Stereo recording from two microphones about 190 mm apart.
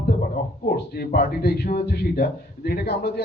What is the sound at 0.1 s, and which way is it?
A man's voice, 50° left (ahead or behind).